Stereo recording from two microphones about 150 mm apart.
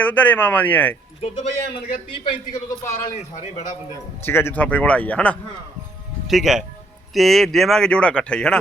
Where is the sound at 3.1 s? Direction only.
50° left (ahead or behind).